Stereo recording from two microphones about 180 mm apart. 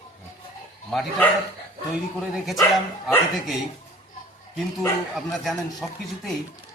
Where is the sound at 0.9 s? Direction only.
5° left (ahead or behind).